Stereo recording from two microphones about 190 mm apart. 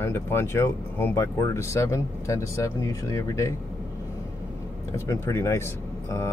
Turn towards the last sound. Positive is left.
turn(degrees=15)  # may be behind; listen again after turning